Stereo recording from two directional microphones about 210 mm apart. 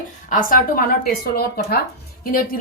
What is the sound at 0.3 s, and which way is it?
Speech, 40° left (ahead or behind).